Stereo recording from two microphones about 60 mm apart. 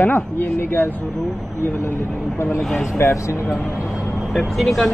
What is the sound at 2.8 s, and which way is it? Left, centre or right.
Speech, left.